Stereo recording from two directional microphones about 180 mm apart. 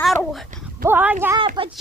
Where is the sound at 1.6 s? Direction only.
30° right (ahead or behind).